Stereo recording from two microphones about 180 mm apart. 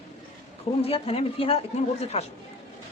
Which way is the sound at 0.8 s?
30° left (ahead or behind).